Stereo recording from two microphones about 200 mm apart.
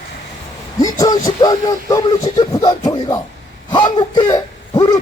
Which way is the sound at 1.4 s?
20° left (ahead or behind).